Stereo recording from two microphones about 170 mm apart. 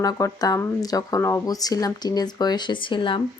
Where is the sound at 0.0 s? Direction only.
20° left (ahead or behind).